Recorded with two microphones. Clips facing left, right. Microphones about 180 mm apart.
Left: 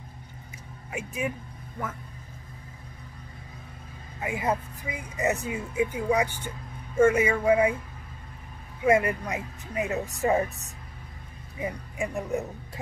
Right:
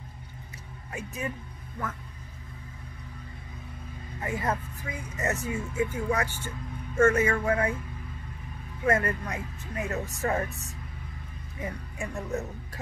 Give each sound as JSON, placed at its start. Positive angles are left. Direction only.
{"t": 0.9, "sound": "speech", "side_deg": 15}
{"t": 4.2, "sound": "speech", "side_deg": 15}
{"t": 8.8, "sound": "speech", "side_deg": 15}
{"t": 11.6, "sound": "speech", "side_deg": 15}